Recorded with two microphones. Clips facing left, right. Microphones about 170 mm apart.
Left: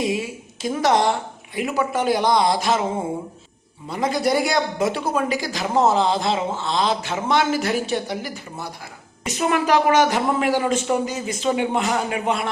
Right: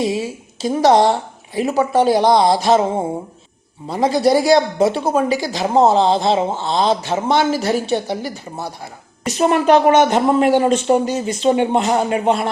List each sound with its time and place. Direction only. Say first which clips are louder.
0.0 s a woman's voice: right 4 dB; 35° right (ahead or behind)
3.8 s speech: right 6 dB; 35° right (ahead or behind)
9.6 s speech: right 5 dB; 25° right (ahead or behind)